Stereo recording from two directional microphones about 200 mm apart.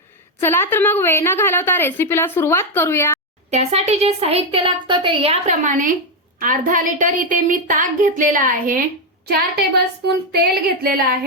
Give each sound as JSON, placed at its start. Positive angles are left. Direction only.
{"t": 0.3, "sound": "a woman's voice", "side_deg": 10}
{"t": 3.5, "sound": "a woman's voice", "side_deg": -30}
{"t": 9.2, "sound": "child singing", "side_deg": -55}